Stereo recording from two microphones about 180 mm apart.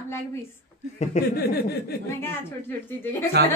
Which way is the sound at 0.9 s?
40° left (ahead or behind).